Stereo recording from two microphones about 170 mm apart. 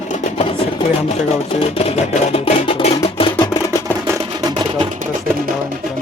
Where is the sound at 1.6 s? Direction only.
35° left (ahead or behind).